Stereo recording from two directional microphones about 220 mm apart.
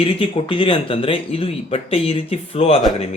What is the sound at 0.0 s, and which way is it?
Speech, 25° left (ahead or behind).